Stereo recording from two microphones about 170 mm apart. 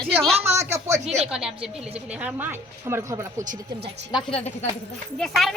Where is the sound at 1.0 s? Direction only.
40° right (ahead or behind).